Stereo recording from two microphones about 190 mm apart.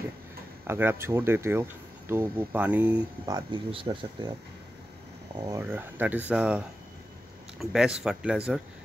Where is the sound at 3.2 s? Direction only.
20° right (ahead or behind).